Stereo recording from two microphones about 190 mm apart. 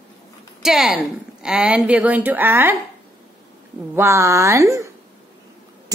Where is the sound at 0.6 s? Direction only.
5° right (ahead or behind).